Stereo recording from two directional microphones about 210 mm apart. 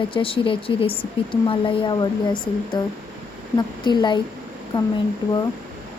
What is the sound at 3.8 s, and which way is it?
Speech, 20° left (ahead or behind).